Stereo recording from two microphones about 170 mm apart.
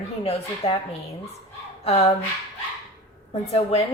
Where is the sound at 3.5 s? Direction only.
35° left (ahead or behind).